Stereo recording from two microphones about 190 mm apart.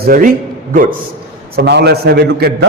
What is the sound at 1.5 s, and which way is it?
A man's voice, 60° right (ahead or behind).